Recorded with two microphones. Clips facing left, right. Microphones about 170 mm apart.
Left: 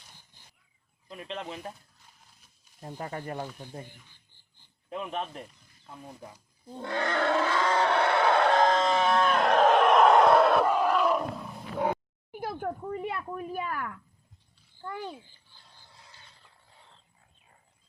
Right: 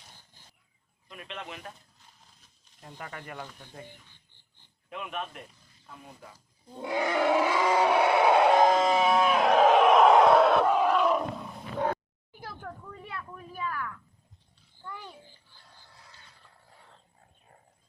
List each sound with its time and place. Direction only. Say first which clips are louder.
1.0 s speech: left 4 dB; 30° left (ahead or behind)
2.8 s speech: left 6 dB; 35° left (ahead or behind)
4.9 s speech: left 3 dB; 30° left (ahead or behind)
6.7 s wild animals: right 2 dB; 10° right (ahead or behind)
12.3 s speech: left 9 dB; 75° left (ahead or behind)